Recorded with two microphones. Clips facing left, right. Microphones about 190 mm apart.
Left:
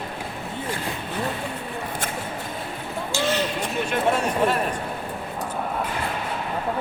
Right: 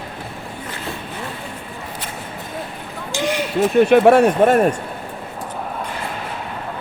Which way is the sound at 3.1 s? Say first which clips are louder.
Right 3 dB; 15° right (ahead or behind).